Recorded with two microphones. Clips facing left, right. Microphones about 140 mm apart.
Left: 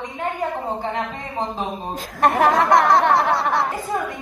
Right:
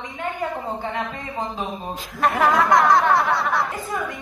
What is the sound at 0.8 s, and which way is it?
Speech, 35° left (ahead or behind).